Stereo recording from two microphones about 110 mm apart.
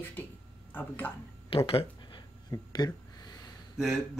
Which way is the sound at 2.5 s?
40° left (ahead or behind).